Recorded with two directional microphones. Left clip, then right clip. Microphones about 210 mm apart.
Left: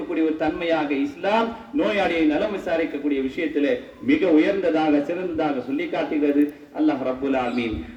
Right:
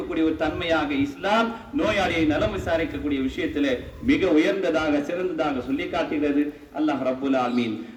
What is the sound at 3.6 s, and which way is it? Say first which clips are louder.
A man's voice: left 2 dB; 55° right (ahead or behind).